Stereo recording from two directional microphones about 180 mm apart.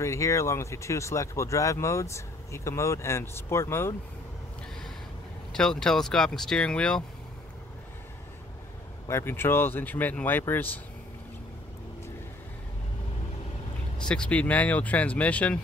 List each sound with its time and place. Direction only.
0.0 s speech: 15° left (ahead or behind)
5.5 s speech: 5° left (ahead or behind)
9.0 s speech: 15° left (ahead or behind)
13.9 s speech: 5° left (ahead or behind)